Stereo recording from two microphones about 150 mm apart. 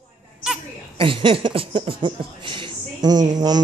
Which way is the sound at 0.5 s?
5° right (ahead or behind).